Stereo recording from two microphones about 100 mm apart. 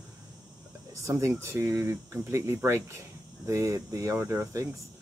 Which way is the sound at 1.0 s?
30° right (ahead or behind).